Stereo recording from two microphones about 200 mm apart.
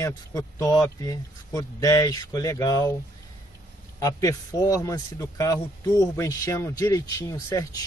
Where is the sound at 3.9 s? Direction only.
15° left (ahead or behind).